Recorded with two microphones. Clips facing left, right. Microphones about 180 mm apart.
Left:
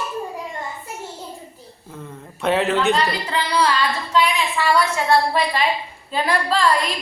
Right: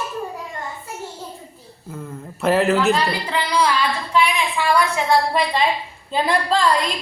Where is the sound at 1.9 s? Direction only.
5° right (ahead or behind); by 6.7 s 20° right (ahead or behind).